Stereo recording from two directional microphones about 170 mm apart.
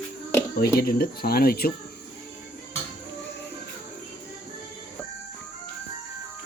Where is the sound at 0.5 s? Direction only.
65° left (ahead or behind).